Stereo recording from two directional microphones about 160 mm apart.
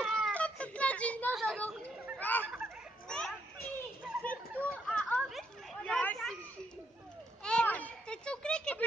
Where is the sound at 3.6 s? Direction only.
75° left (ahead or behind).